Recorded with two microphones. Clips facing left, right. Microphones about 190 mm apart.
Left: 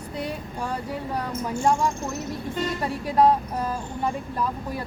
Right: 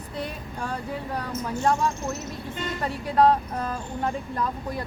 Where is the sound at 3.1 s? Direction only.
10° left (ahead or behind).